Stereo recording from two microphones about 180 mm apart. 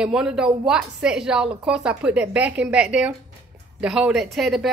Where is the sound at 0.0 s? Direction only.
5° right (ahead or behind).